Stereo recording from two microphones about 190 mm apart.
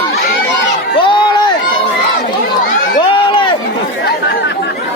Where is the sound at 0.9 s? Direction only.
25° left (ahead or behind).